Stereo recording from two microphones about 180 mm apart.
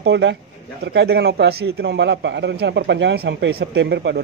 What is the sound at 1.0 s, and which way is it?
A man's voice, 65° right (ahead or behind).